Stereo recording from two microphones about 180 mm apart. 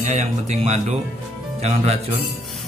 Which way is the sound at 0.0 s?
40° right (ahead or behind).